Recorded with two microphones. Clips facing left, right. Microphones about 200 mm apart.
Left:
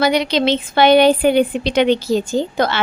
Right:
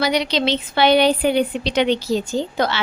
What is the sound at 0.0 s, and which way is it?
A woman's voice, 50° left (ahead or behind).